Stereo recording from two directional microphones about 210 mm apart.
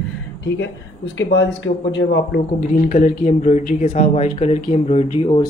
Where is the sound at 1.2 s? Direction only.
60° left (ahead or behind).